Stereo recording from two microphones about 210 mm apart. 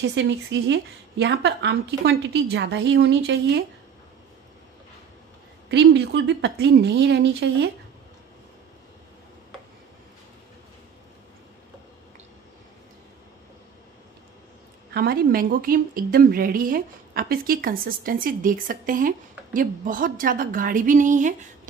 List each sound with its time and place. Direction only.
0.0 s a woman's voice: 60° right (ahead or behind)
5.7 s a woman's voice: 55° right (ahead or behind)
15.0 s a woman's voice: 45° right (ahead or behind)